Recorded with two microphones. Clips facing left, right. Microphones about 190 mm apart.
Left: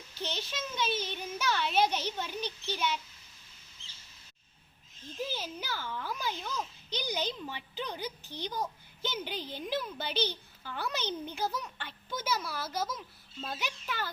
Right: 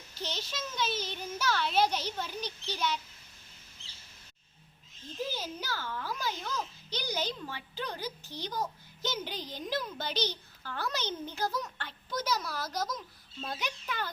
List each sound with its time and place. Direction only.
0.1 s a sound: 10° right (ahead or behind)
0.5 s a child's voice: 10° left (ahead or behind)
1.9 s a child's voice: 10° right (ahead or behind)
2.7 s a child's voice: 10° left (ahead or behind)
5.4 s a child's voice: 10° left (ahead or behind)